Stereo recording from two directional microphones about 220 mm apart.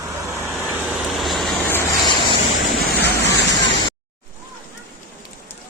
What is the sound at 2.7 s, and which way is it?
Vehicle, 45° left (ahead or behind).